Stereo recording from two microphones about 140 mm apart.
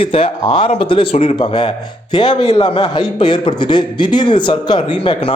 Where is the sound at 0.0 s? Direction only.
40° left (ahead or behind).